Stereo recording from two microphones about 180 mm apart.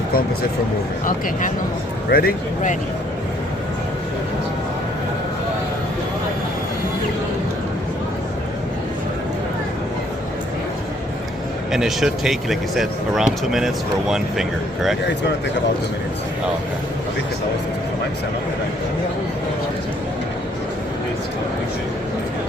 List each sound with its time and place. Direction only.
2.0 s speech: 55° left (ahead or behind)
11.7 s speech: centre (ahead or behind)